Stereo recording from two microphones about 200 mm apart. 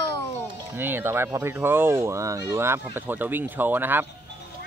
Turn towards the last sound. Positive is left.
turn(degrees=-10)  # may be behind; listen again after turning